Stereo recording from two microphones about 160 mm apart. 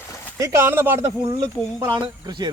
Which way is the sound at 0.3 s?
20° right (ahead or behind).